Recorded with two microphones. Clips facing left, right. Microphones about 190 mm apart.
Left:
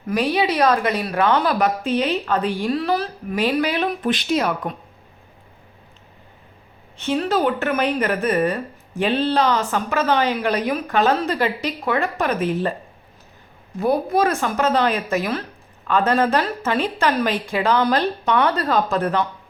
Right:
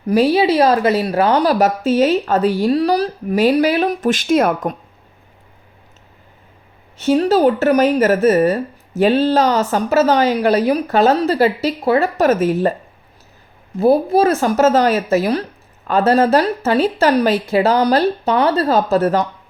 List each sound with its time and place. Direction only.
0.1 s a woman's voice: 30° right (ahead or behind)
7.0 s a woman's voice: 40° right (ahead or behind)
13.7 s a woman's voice: 30° right (ahead or behind)